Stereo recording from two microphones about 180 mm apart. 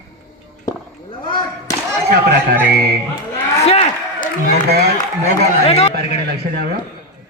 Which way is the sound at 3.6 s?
35° left (ahead or behind).